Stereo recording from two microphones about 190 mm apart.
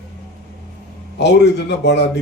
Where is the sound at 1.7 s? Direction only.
65° left (ahead or behind).